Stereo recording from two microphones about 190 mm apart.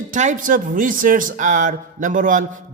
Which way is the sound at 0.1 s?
40° right (ahead or behind).